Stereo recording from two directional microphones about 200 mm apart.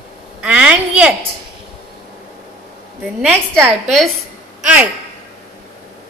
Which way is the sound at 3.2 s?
10° right (ahead or behind).